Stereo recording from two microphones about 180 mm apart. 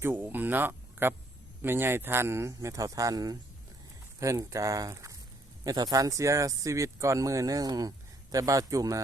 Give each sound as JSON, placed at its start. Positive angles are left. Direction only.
{"t": 0.0, "sound": "speech", "side_deg": -10}